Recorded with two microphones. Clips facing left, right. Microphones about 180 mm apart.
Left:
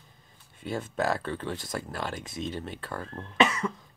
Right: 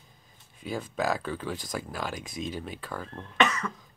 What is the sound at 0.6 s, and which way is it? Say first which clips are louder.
Speech: left 1 dB; centre (ahead or behind).